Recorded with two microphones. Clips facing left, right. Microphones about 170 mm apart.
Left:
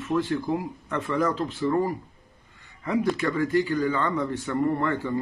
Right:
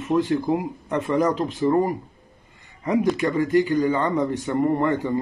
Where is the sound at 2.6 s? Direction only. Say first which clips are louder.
Right 4 dB; 15° right (ahead or behind).